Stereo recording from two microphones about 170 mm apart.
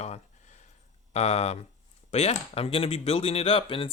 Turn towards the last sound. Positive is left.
turn(degrees=35)  # may be behind; listen again after turning